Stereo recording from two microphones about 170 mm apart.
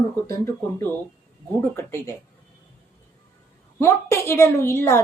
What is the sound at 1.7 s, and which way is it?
Speech, 15° left (ahead or behind).